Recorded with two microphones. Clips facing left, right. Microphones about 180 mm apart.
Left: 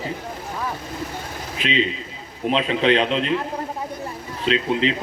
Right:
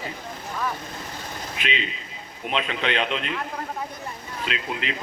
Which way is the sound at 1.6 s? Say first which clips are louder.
Left 9 dB; 35° left (ahead or behind).